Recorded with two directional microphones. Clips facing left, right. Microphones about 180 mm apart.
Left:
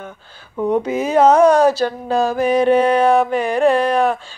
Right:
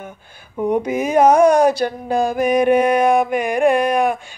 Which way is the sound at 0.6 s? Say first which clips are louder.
Left 1 dB; 15° right (ahead or behind).